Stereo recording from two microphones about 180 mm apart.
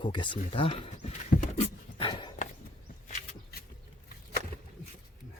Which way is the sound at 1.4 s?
35° left (ahead or behind).